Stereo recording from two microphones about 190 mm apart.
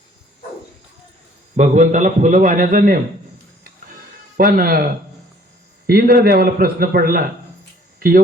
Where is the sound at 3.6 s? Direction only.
45° right (ahead or behind).